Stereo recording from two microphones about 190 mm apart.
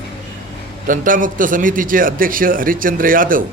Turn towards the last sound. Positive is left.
turn(degrees=-45)  # may be behind; listen again after turning